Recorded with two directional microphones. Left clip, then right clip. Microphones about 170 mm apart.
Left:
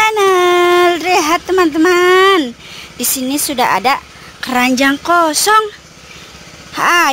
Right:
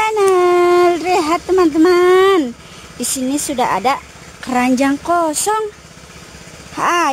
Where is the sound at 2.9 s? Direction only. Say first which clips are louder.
Left 2 dB; centre (ahead or behind).